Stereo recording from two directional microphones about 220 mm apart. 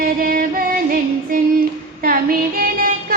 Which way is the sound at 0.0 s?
40° right (ahead or behind).